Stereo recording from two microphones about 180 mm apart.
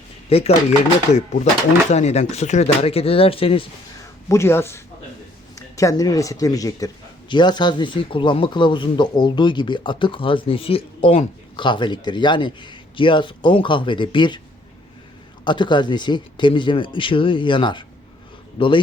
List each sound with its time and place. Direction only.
0.3 s speech: 35° left (ahead or behind)
4.3 s speech: 15° left (ahead or behind)
15.4 s speech: 25° left (ahead or behind)